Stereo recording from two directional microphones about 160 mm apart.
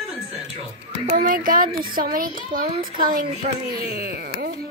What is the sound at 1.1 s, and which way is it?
A child's voice, 60° right (ahead or behind).